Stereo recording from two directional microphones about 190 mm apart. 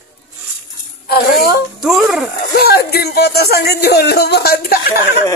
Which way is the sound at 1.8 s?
Centre (ahead or behind).